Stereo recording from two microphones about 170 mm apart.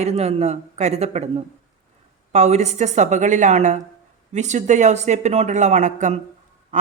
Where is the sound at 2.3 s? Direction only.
40° right (ahead or behind).